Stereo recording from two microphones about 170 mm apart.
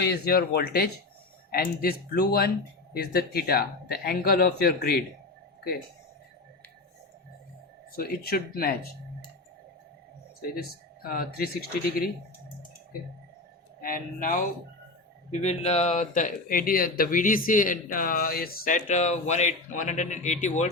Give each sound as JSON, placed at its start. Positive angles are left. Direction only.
{"t": 0.1, "sound": "speech", "side_deg": 65}
{"t": 7.9, "sound": "speech", "side_deg": 60}
{"t": 10.5, "sound": "speech", "side_deg": 60}
{"t": 13.8, "sound": "speech", "side_deg": 50}
{"t": 15.3, "sound": "speech", "side_deg": 40}